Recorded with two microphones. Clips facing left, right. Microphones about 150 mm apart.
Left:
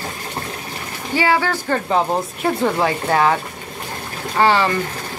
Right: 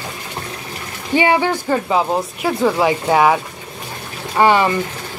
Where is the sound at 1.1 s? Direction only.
20° right (ahead or behind).